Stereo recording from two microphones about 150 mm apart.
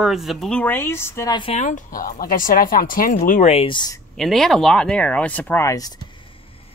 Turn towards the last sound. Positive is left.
turn(degrees=25)  # may be behind; listen again after turning